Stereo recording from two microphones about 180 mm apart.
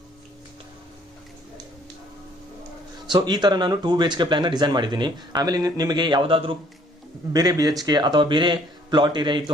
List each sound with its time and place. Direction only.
3.1 s speech: 25° right (ahead or behind)